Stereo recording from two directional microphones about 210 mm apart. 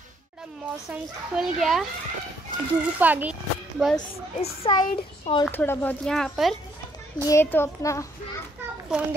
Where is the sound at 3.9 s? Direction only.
30° left (ahead or behind).